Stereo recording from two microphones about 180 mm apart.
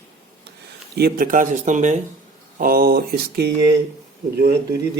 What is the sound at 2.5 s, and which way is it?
Speech, 55° right (ahead or behind).